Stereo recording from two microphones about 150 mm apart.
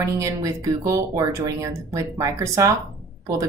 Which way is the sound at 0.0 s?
20° right (ahead or behind).